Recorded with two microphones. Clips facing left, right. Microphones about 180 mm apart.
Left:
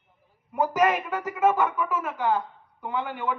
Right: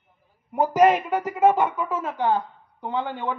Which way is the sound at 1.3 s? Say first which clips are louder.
Right 3 dB; 30° right (ahead or behind).